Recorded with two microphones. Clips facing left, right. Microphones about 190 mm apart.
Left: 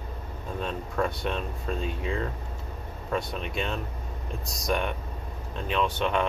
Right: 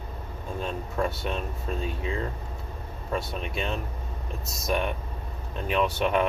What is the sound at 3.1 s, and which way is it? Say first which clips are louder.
Speech: left 1 dB; centre (ahead or behind).